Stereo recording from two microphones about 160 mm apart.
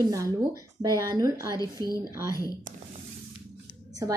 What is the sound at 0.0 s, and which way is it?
Speech, 20° right (ahead or behind).